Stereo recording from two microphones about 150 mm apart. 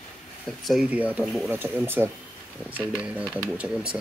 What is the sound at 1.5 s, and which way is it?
Speech, 15° right (ahead or behind).